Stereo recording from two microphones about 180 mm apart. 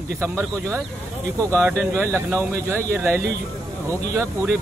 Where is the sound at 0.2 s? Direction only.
15° right (ahead or behind).